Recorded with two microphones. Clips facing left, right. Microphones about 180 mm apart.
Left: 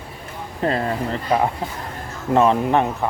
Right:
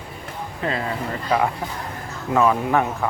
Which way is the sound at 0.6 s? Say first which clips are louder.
Left 4 dB; 40° left (ahead or behind).